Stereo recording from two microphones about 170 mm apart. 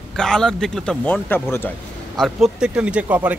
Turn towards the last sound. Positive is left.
turn(degrees=-10)  # may be behind; listen again after turning